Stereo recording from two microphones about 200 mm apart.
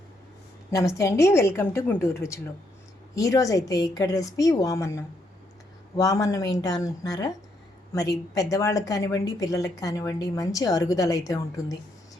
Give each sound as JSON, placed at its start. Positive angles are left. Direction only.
{"t": 0.7, "sound": "a woman's voice", "side_deg": 15}